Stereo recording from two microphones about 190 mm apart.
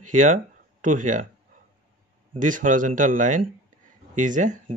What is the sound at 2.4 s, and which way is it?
Speech, 40° right (ahead or behind).